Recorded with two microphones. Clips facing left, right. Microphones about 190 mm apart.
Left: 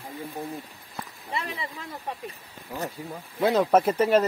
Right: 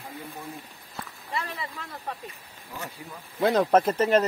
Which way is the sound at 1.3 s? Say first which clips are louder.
Left 1 dB; 20° left (ahead or behind).